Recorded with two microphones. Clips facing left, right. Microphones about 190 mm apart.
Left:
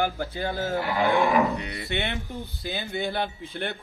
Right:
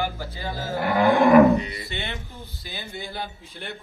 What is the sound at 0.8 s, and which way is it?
Roaring cats, 55° right (ahead or behind).